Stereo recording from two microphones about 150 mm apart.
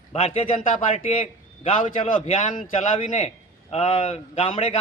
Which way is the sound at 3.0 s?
50° left (ahead or behind).